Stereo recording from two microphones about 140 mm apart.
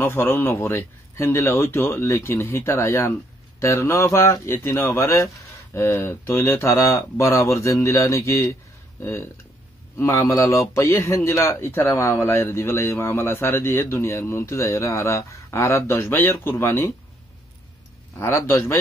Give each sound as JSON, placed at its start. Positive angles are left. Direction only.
{"t": 0.0, "sound": "speech", "side_deg": 15}
{"t": 18.1, "sound": "speech", "side_deg": 20}